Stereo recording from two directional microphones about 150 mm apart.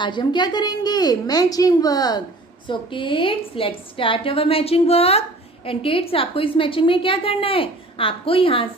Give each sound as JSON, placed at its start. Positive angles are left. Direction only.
{"t": 0.0, "sound": "a woman's voice", "side_deg": 30}